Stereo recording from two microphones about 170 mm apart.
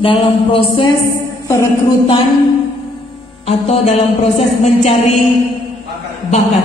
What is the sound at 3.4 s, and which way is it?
Mantra, 35° left (ahead or behind).